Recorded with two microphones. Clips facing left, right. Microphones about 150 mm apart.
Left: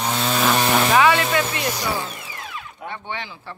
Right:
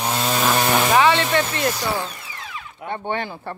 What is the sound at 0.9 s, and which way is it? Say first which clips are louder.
Speech: right 1 dB; 25° right (ahead or behind).